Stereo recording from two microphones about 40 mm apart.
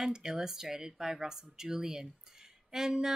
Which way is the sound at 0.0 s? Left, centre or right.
Centre.